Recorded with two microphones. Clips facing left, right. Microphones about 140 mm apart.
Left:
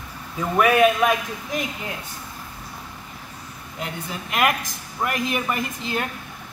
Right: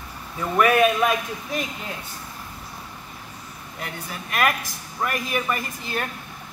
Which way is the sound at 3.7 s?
20° left (ahead or behind).